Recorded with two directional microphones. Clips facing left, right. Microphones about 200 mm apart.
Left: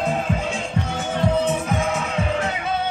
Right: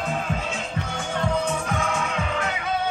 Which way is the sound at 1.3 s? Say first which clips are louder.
Left 4 dB; 20° left (ahead or behind).